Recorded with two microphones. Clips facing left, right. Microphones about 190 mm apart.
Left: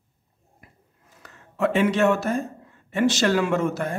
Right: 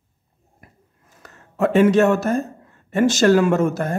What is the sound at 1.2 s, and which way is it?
Speech, 45° right (ahead or behind).